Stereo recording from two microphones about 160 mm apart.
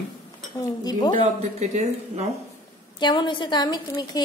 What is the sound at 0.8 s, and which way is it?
Speech, 25° left (ahead or behind).